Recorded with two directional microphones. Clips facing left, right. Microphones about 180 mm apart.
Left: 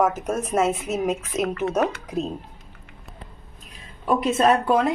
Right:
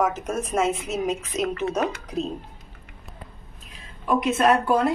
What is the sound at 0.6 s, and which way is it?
Speech, 50° left (ahead or behind).